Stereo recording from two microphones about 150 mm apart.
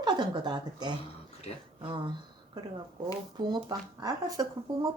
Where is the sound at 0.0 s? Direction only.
30° right (ahead or behind).